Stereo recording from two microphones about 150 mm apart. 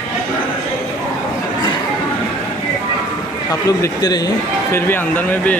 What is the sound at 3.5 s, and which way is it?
Speech, 25° left (ahead or behind).